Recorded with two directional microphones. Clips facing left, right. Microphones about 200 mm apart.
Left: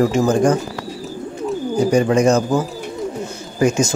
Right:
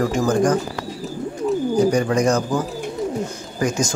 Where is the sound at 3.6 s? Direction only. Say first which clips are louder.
Left 5 dB; 25° left (ahead or behind).